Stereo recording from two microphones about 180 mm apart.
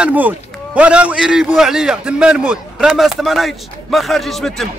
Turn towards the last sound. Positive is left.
turn(degrees=0)  # may be behind; listen again after turning